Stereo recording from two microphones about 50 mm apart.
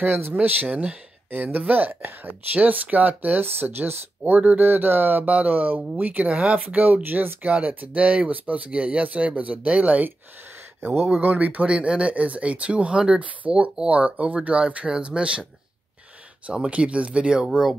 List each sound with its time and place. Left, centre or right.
0.0 s speech: right
0.7 s speech: right
1.3 s speech: right
11.1 s speech: right
16.7 s speech: right